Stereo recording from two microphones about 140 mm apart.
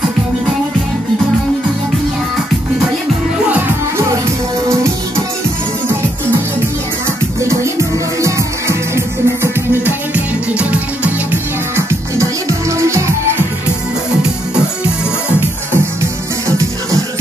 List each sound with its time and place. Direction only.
8.2 s music: 20° right (ahead or behind)
11.7 s music: 20° right (ahead or behind)
15.7 s music: 20° right (ahead or behind)